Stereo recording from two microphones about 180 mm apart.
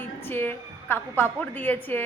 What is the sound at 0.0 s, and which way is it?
A woman's voice, 10° left (ahead or behind).